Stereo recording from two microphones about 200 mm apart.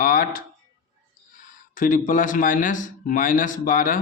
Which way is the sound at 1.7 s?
40° left (ahead or behind).